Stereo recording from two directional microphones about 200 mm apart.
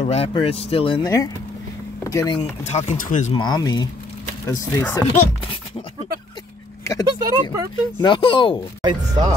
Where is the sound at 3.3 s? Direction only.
20° left (ahead or behind).